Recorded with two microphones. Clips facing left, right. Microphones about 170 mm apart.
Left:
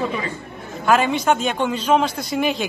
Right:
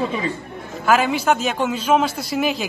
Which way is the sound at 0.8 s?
5° right (ahead or behind).